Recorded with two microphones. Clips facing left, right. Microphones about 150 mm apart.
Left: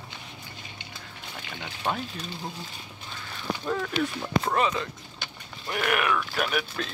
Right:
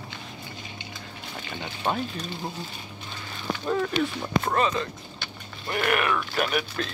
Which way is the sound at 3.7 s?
10° right (ahead or behind).